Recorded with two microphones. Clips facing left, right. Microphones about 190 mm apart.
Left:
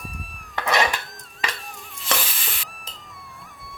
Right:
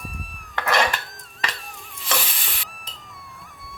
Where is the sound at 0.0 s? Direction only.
Centre (ahead or behind).